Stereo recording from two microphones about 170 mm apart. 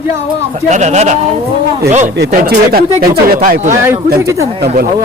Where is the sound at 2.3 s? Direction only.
60° right (ahead or behind).